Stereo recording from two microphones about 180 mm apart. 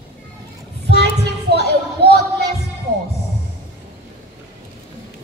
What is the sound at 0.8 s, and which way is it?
Child singing, 65° right (ahead or behind).